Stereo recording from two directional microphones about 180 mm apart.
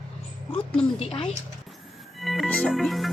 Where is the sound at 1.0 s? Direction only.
30° left (ahead or behind).